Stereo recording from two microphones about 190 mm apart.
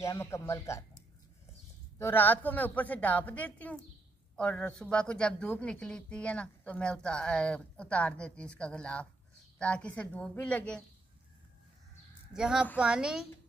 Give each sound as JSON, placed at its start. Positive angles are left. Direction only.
{"t": 0.0, "sound": "a woman's voice", "side_deg": 15}
{"t": 2.0, "sound": "a woman's voice", "side_deg": 10}
{"t": 12.4, "sound": "speech", "side_deg": -5}